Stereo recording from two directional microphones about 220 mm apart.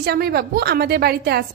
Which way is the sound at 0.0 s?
45° right (ahead or behind).